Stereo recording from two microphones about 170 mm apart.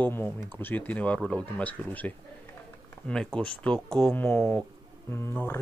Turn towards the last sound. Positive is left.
turn(degrees=15)  # may be behind; listen again after turning